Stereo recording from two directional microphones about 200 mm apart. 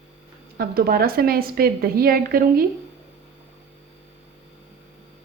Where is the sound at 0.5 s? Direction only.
50° right (ahead or behind).